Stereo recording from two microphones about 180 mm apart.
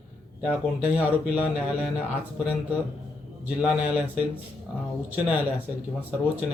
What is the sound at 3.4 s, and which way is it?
Speech, 5° right (ahead or behind).